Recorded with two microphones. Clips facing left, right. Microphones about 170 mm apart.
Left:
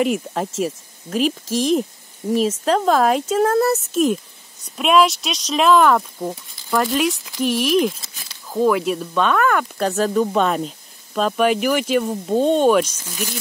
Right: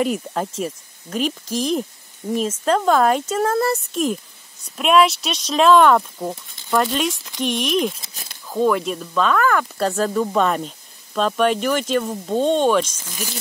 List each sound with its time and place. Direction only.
0.0 s speech: centre (ahead or behind)
8.1 s a sound: 45° right (ahead or behind)
8.5 s speech: 5° left (ahead or behind)